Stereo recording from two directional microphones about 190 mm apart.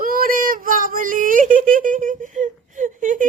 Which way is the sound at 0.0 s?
50° right (ahead or behind).